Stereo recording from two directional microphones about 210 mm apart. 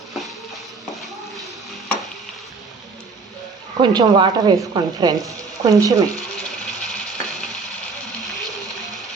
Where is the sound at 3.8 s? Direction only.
25° right (ahead or behind).